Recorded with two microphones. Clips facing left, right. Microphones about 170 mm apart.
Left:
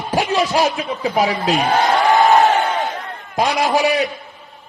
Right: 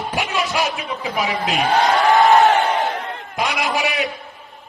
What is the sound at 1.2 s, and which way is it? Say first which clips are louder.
Speech: left 4 dB; 35° left (ahead or behind).